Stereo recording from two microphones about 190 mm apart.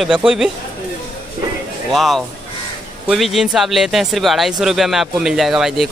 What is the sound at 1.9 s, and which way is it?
Speech, centre (ahead or behind).